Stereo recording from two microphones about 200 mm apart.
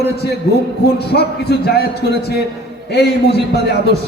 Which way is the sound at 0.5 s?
50° left (ahead or behind).